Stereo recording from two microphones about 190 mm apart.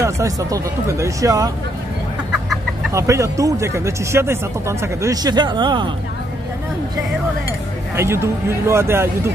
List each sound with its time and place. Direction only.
0.0 s speech: 15° right (ahead or behind)
2.9 s speech: 15° right (ahead or behind)
7.9 s speech: 15° right (ahead or behind)